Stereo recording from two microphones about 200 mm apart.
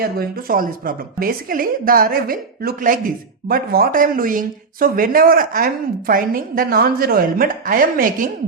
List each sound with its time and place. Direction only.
0.0 s speech: 45° right (ahead or behind)